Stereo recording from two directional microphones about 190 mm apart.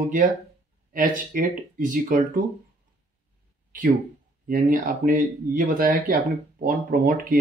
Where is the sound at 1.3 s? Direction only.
45° right (ahead or behind).